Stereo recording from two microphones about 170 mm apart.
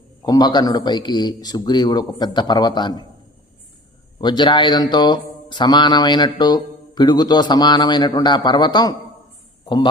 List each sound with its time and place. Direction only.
0.3 s speech: 25° left (ahead or behind)
4.2 s a man's voice: 25° left (ahead or behind)